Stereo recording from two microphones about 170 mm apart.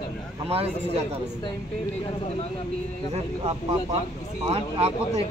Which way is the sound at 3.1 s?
35° right (ahead or behind).